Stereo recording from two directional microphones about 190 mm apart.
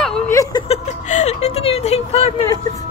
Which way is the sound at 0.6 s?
35° left (ahead or behind).